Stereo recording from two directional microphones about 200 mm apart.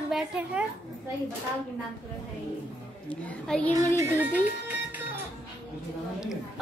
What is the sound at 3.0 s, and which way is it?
Speech, 5° left (ahead or behind).